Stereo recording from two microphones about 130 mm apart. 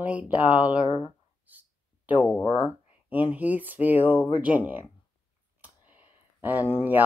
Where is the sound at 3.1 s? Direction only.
10° right (ahead or behind).